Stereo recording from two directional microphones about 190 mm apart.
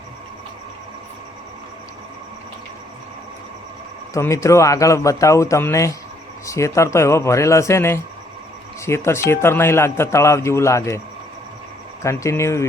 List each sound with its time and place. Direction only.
4.1 s a man's voice: 15° left (ahead or behind)
12.0 s a man's voice: 15° left (ahead or behind)